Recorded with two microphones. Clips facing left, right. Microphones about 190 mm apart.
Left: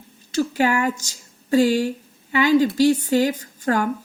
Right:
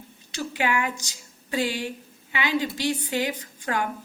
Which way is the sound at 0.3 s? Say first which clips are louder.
Left 7 dB; 40° left (ahead or behind).